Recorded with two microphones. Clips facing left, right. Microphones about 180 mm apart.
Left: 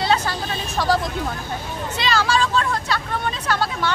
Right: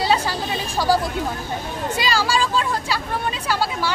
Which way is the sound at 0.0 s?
10° right (ahead or behind).